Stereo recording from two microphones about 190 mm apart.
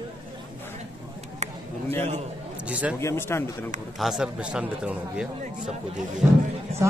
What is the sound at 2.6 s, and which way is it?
Speech, 5° right (ahead or behind).